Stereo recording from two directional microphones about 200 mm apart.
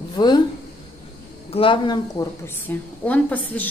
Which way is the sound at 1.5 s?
25° left (ahead or behind).